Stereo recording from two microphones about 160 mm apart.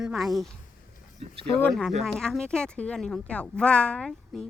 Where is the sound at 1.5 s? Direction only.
10° left (ahead or behind).